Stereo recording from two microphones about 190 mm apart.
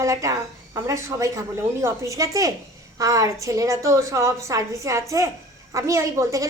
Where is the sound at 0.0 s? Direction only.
15° right (ahead or behind).